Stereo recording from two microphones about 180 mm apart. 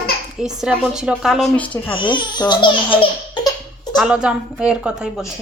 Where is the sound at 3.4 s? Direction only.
25° left (ahead or behind).